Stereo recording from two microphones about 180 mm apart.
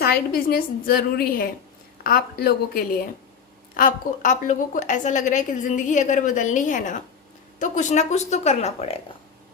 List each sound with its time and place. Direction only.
0.0 s a woman's voice: 55° left (ahead or behind); by 9.0 s 35° left (ahead or behind)